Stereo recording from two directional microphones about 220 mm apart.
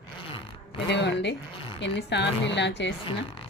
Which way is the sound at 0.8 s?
50° left (ahead or behind).